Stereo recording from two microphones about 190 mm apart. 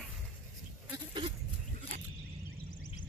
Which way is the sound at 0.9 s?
25° right (ahead or behind).